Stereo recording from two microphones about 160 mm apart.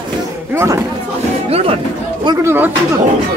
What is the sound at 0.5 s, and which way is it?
Speech, 20° right (ahead or behind).